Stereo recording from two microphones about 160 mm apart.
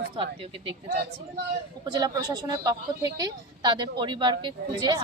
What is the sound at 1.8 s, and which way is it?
A woman's voice, 25° right (ahead or behind).